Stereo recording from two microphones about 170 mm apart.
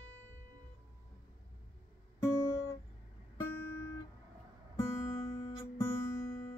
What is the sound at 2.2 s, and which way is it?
Guitar, 20° left (ahead or behind).